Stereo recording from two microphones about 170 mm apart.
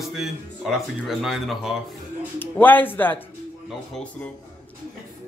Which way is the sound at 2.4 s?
10° left (ahead or behind).